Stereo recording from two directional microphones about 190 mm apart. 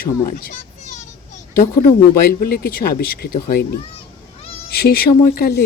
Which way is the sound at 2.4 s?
50° left (ahead or behind).